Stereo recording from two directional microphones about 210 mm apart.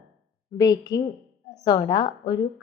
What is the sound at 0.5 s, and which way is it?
A woman's voice, 20° left (ahead or behind).